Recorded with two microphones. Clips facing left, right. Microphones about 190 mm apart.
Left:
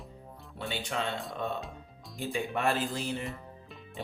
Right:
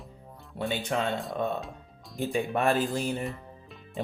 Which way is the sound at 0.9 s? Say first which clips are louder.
Right 4 dB; 50° right (ahead or behind).